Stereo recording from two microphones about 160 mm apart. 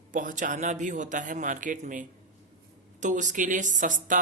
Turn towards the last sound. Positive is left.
turn(degrees=-55)  # may be behind; listen again after turning